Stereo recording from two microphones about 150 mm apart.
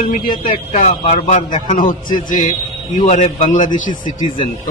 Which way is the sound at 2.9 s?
50° left (ahead or behind).